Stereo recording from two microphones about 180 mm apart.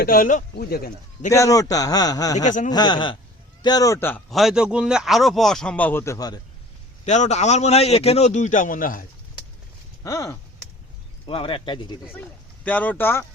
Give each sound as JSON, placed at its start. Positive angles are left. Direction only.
{"t": 0.0, "sound": "speech", "side_deg": 50}
{"t": 1.3, "sound": "a man's voice", "side_deg": 20}
{"t": 2.4, "sound": "speech", "side_deg": 45}
{"t": 2.7, "sound": "a man's voice", "side_deg": 25}
{"t": 4.3, "sound": "speech", "side_deg": 0}
{"t": 7.0, "sound": "a man's voice", "side_deg": 40}
{"t": 10.0, "sound": "a man's voice", "side_deg": 20}
{"t": 11.3, "sound": "a man's voice", "side_deg": 30}
{"t": 12.1, "sound": "speech", "side_deg": 10}